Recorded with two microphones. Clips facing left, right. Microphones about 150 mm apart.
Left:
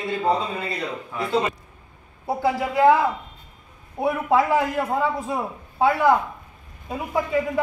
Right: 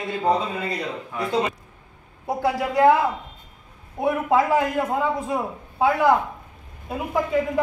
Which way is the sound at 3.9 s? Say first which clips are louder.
Even; centre (ahead or behind).